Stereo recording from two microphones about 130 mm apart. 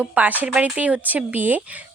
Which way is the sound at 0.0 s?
15° right (ahead or behind).